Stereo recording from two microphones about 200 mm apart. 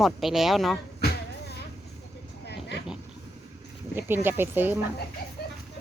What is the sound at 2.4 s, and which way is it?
Vehicle, 55° left (ahead or behind).